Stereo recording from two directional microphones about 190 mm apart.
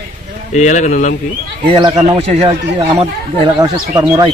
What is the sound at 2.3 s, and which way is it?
Speech, 35° right (ahead or behind).